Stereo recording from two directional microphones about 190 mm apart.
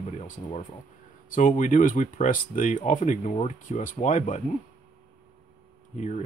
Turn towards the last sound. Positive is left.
turn(degrees=40)  # may be behind; listen again after turning